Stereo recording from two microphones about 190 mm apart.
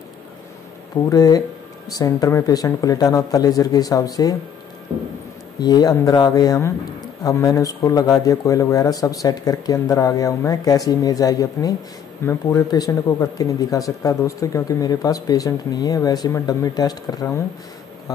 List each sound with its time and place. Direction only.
1.0 s speech: 20° left (ahead or behind)
5.6 s speech: 20° left (ahead or behind)